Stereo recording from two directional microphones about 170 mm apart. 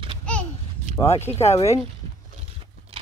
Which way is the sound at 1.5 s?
40° left (ahead or behind).